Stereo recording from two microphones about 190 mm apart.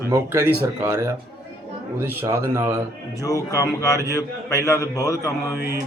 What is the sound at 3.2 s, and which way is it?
A man's voice, 15° left (ahead or behind).